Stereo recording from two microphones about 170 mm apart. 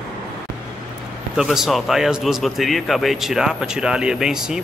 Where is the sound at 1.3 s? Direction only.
5° right (ahead or behind).